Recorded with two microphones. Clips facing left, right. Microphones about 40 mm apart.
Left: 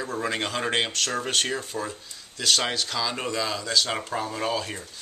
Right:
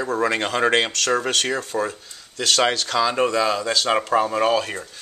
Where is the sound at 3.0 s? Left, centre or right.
Right.